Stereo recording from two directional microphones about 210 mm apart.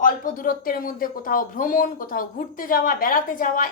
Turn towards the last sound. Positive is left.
turn(degrees=40)  # may be behind; listen again after turning